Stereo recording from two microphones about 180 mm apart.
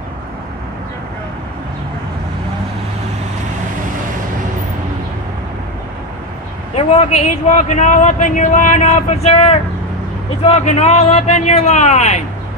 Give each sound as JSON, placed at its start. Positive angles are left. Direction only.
{"t": 6.7, "sound": "a man's voice", "side_deg": 35}